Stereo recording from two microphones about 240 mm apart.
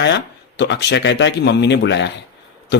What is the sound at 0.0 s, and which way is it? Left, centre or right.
Speech, left.